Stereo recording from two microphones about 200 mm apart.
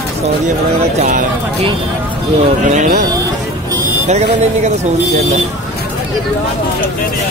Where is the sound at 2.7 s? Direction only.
35° right (ahead or behind).